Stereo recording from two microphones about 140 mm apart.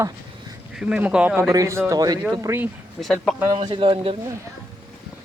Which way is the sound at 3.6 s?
35° right (ahead or behind).